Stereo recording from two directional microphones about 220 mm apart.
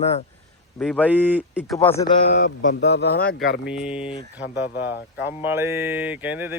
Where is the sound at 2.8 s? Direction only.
50° left (ahead or behind).